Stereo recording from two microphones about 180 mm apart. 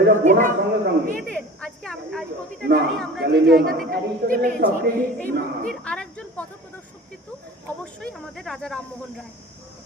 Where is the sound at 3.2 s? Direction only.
60° right (ahead or behind).